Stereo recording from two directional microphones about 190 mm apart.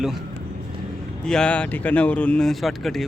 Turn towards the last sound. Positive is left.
turn(degrees=0)  # may be behind; listen again after turning